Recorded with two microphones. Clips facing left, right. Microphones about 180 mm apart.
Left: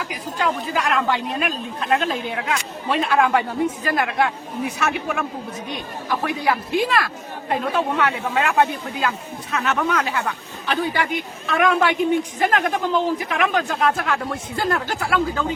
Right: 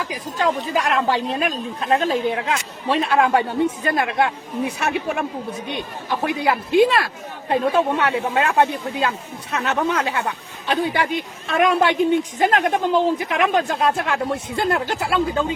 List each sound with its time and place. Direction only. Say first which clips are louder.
0.1 s speech: right 2 dB; 30° right (ahead or behind)